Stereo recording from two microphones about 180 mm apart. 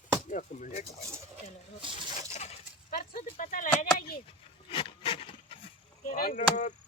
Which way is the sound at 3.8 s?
50° left (ahead or behind).